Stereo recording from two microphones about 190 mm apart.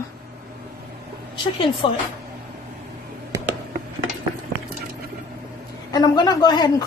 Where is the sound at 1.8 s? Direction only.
25° left (ahead or behind).